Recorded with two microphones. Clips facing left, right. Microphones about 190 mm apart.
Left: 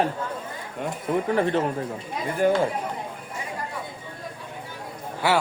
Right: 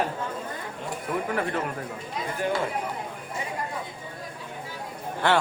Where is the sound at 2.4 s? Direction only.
45° left (ahead or behind).